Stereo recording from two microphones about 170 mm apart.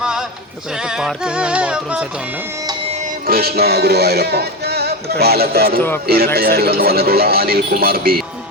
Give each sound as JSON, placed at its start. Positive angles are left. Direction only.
{"t": 0.0, "sound": "singing", "side_deg": -5}
{"t": 0.8, "sound": "music", "side_deg": -5}
{"t": 3.2, "sound": "music", "side_deg": -65}
{"t": 6.1, "sound": "speech", "side_deg": -65}